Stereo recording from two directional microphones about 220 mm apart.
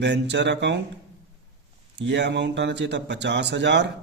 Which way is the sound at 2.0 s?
50° right (ahead or behind).